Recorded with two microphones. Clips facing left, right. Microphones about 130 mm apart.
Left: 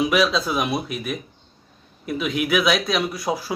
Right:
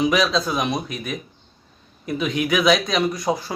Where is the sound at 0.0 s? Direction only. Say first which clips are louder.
Even; 5° left (ahead or behind).